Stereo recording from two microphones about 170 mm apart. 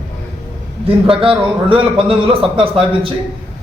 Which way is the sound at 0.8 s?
35° right (ahead or behind).